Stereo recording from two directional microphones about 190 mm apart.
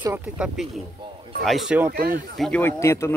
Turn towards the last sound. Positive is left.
turn(degrees=15)  # may be behind; listen again after turning